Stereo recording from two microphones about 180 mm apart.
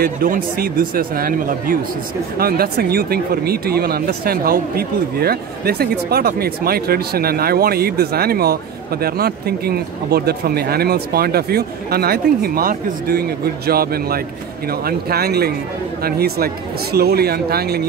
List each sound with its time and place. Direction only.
0.0 s speech: 55° right (ahead or behind)